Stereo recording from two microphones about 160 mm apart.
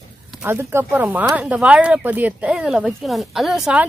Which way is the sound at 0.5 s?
15° right (ahead or behind).